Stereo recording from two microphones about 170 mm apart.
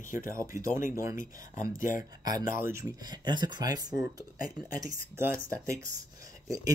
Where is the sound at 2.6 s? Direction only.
20° right (ahead or behind).